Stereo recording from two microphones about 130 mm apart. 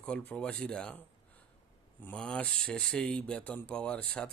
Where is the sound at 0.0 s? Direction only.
10° left (ahead or behind).